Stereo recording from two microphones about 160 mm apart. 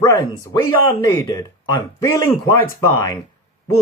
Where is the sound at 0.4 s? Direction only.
20° left (ahead or behind).